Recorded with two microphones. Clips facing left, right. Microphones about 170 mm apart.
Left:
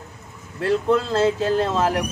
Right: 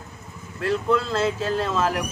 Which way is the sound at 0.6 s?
20° left (ahead or behind).